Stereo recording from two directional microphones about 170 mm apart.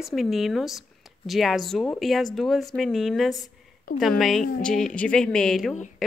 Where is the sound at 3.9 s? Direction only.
55° left (ahead or behind).